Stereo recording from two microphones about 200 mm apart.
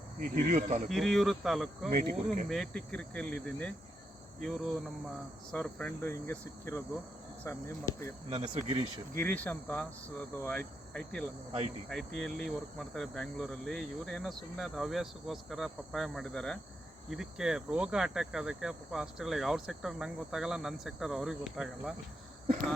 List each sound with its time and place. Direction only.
0.2 s speech: 40° right (ahead or behind)
0.9 s speech: centre (ahead or behind)
8.3 s speech: 30° right (ahead or behind)
9.1 s speech: 10° left (ahead or behind)